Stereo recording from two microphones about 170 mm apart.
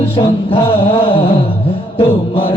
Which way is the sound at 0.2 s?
30° left (ahead or behind).